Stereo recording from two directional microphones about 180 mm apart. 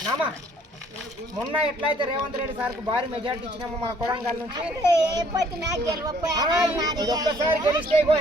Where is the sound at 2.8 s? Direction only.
30° right (ahead or behind).